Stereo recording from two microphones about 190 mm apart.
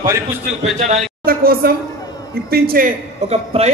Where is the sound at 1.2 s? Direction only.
50° right (ahead or behind).